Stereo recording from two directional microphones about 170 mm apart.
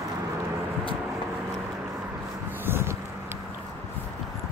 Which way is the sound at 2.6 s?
15° right (ahead or behind).